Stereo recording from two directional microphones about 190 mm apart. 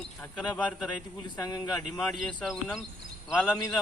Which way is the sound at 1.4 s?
20° left (ahead or behind).